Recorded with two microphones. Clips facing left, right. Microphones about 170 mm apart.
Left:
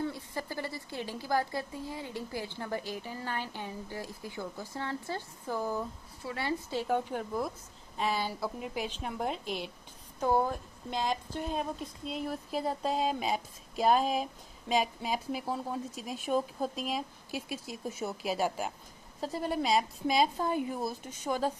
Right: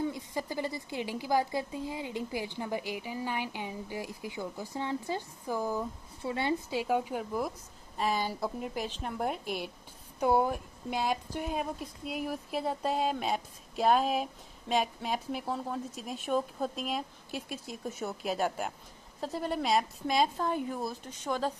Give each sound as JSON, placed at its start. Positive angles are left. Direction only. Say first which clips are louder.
{"t": 0.0, "sound": "a woman's voice", "louder": "right 2 dB", "side_deg": -15}
{"t": 6.2, "sound": "a woman's voice", "louder": "right 4 dB", "side_deg": -20}
{"t": 6.7, "sound": "a woman's voice", "louder": "right 1 dB", "side_deg": -10}
{"t": 8.7, "sound": "a woman's voice", "louder": "even", "side_deg": 10}
{"t": 9.2, "sound": "a woman's voice", "louder": "right 1 dB", "side_deg": -10}